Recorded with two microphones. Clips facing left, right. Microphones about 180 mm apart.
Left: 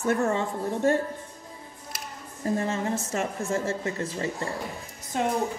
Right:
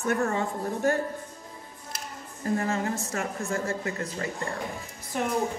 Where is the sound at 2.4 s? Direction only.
25° left (ahead or behind).